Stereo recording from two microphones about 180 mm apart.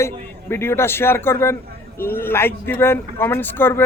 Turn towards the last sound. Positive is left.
turn(degrees=15)  # may be behind; listen again after turning